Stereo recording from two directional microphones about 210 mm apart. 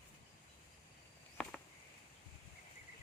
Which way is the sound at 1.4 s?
5° left (ahead or behind).